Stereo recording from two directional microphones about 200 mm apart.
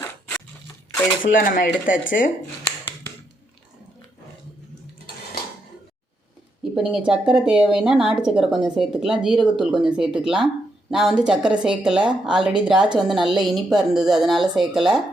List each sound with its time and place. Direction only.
1.2 s speech: 45° left (ahead or behind)
6.7 s speech: 5° right (ahead or behind)